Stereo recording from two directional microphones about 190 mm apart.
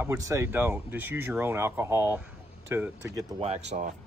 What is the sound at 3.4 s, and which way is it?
Speech, 35° right (ahead or behind).